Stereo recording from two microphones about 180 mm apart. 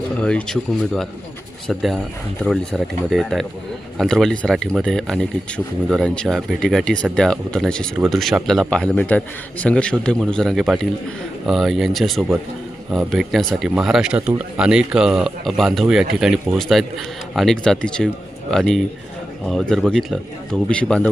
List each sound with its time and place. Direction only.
0.2 s speech: 5° left (ahead or behind)